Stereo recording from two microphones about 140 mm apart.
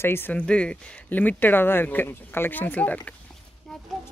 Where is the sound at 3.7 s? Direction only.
Centre (ahead or behind).